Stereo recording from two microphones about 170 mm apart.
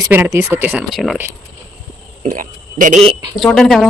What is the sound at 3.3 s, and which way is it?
Speech, centre (ahead or behind).